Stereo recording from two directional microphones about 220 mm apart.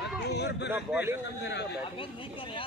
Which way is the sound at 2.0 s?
25° left (ahead or behind).